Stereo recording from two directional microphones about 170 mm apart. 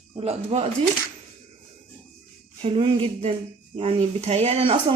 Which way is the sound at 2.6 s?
35° right (ahead or behind).